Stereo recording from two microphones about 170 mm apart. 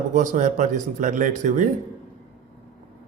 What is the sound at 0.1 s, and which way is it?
Speech, 45° right (ahead or behind).